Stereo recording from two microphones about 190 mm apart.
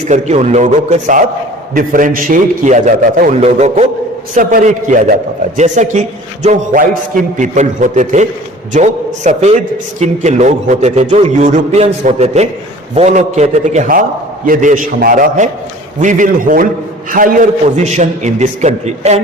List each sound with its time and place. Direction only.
0.0 s a man's voice: 35° right (ahead or behind)